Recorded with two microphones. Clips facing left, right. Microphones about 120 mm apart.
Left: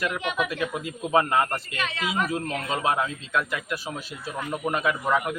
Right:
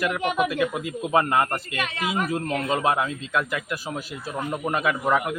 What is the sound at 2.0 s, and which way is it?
Speech, 40° right (ahead or behind).